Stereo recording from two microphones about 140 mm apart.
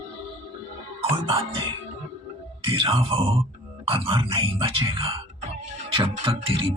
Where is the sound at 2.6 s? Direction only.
40° right (ahead or behind).